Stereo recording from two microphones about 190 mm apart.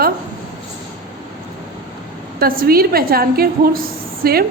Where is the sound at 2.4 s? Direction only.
50° right (ahead or behind).